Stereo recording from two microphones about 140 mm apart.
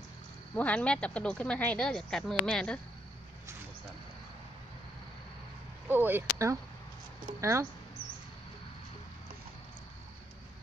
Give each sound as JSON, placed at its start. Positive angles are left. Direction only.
{"t": 0.6, "sound": "speech", "side_deg": 10}
{"t": 5.9, "sound": "speech", "side_deg": -15}